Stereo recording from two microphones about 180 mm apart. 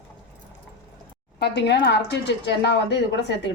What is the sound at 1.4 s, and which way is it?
A woman's voice, 70° left (ahead or behind).